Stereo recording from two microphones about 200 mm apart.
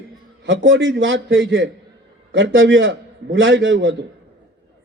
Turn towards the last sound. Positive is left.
turn(degrees=-70)  # may be behind; listen again after turning